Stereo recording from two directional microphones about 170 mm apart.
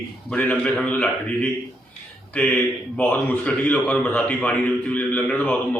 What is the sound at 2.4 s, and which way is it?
A man's voice, 10° left (ahead or behind).